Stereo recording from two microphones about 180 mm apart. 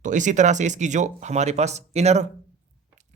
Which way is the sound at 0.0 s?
45° right (ahead or behind).